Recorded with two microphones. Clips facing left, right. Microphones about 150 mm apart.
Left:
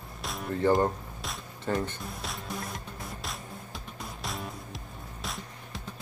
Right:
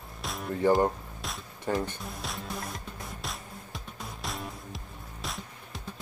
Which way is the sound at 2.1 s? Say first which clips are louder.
Even; centre (ahead or behind).